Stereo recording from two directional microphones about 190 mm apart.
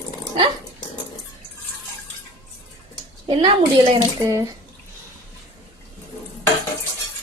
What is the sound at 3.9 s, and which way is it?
Speech, 20° right (ahead or behind).